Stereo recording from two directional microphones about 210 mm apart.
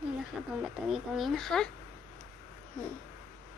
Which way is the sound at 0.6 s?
Centre (ahead or behind).